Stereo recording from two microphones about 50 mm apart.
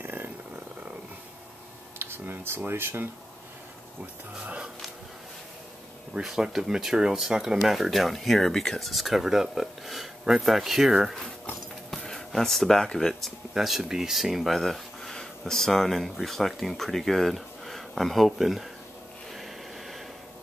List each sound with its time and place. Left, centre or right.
0.0 s purr: right
2.0 s speech: right
4.0 s speech: right
6.1 s speech: centre
11.9 s speech: centre
13.2 s speech: centre
19.3 s a sound: centre